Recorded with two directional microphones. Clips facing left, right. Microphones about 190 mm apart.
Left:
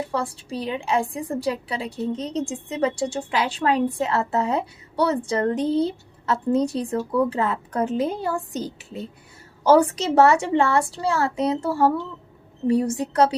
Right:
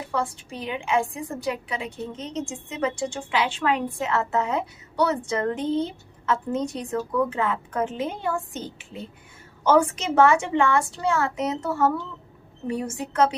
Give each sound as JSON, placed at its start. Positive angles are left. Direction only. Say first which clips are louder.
{"t": 0.1, "sound": "a woman's voice", "louder": "left 1 dB", "side_deg": 35}